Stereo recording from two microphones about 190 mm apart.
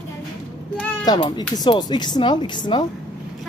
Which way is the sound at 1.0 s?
20° left (ahead or behind).